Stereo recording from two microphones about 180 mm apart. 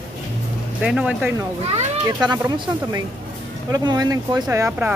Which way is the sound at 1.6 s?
35° right (ahead or behind).